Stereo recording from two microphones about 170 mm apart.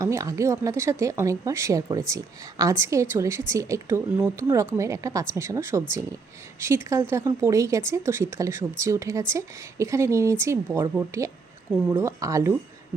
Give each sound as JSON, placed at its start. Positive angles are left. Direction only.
{"t": 0.0, "sound": "speech", "side_deg": -20}